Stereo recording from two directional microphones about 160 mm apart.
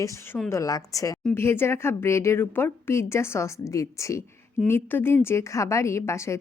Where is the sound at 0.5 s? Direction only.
20° left (ahead or behind).